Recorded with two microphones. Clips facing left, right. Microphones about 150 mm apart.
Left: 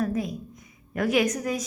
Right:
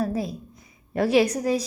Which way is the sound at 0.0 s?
30° right (ahead or behind).